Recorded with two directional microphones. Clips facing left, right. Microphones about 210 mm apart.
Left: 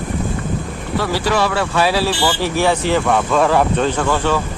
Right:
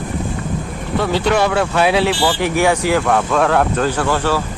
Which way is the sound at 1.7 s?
20° right (ahead or behind).